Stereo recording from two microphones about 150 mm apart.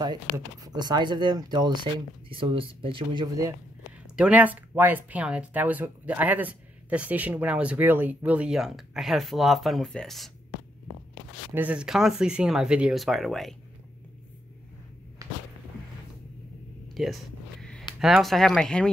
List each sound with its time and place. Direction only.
0.0 s speech: 25° right (ahead or behind)
4.2 s speech: 10° right (ahead or behind)
11.5 s speech: 10° right (ahead or behind)
15.2 s music: 25° right (ahead or behind)
16.9 s a sound: centre (ahead or behind)
17.9 s speech: centre (ahead or behind)